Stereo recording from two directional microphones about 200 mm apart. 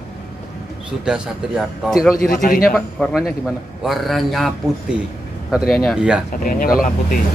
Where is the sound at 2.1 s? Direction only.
45° left (ahead or behind).